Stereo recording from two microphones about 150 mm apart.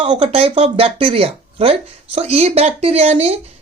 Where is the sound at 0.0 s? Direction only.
40° right (ahead or behind).